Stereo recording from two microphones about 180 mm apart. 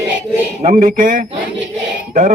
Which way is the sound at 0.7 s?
50° right (ahead or behind).